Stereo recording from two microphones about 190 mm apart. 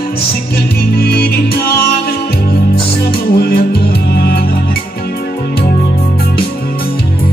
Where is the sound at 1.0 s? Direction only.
55° left (ahead or behind).